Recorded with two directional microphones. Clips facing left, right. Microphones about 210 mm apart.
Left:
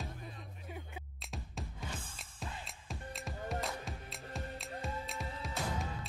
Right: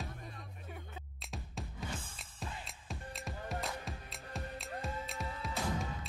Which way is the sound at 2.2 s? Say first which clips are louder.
Even; centre (ahead or behind).